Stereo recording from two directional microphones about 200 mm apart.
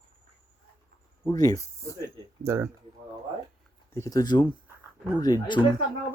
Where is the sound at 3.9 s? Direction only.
15° left (ahead or behind).